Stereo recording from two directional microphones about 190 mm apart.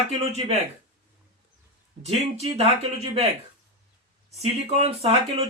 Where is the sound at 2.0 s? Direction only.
30° right (ahead or behind).